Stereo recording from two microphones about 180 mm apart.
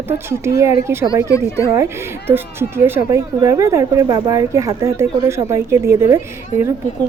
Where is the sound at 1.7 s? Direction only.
15° right (ahead or behind).